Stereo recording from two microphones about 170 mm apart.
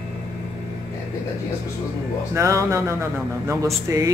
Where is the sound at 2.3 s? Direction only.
20° right (ahead or behind).